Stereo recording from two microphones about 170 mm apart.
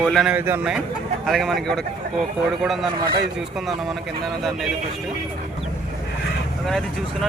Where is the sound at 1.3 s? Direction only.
Centre (ahead or behind).